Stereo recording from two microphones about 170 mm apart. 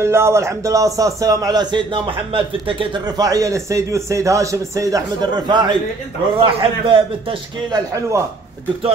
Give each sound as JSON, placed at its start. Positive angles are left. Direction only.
{"t": 0.0, "sound": "a man's voice", "side_deg": -15}